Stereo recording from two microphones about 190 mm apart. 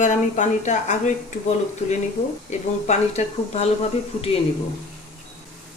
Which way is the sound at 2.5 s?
35° left (ahead or behind).